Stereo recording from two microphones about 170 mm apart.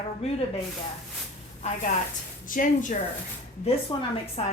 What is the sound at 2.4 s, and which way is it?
Speech, 50° left (ahead or behind).